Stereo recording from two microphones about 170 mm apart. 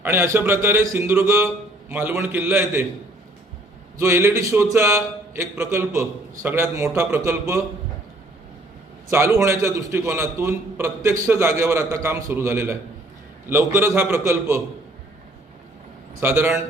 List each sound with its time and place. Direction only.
0.0 s a man's voice: 15° right (ahead or behind)
3.9 s a man's voice: 15° right (ahead or behind)
9.0 s a man's voice: 15° right (ahead or behind)
16.2 s a man's voice: 15° right (ahead or behind)